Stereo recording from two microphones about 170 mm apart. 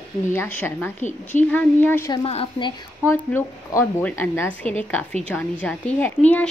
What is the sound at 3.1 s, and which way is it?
A woman's voice, 15° left (ahead or behind).